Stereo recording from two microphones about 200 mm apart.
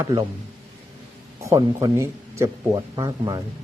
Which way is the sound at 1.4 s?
15° right (ahead or behind).